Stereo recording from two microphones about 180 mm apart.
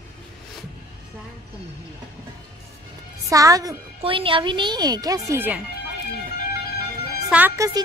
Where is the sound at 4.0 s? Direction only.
30° right (ahead or behind); by 5.6 s 10° right (ahead or behind).